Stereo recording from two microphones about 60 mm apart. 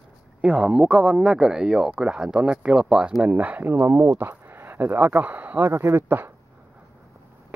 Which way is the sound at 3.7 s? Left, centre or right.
Right.